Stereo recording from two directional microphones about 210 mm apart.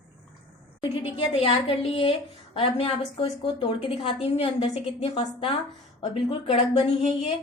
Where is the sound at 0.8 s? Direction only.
25° left (ahead or behind).